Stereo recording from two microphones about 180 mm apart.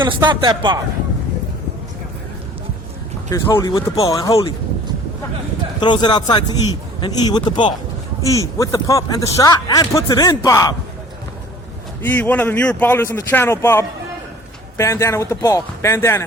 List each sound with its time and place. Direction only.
0.0 s speech: 25° right (ahead or behind)
3.2 s a man's voice: 20° left (ahead or behind)
5.8 s a man's voice: 25° left (ahead or behind)
12.0 s speech: 10° left (ahead or behind)